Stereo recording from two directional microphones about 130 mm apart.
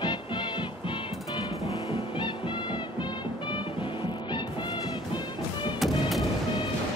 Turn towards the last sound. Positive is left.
turn(degrees=0)  # may be behind; listen again after turning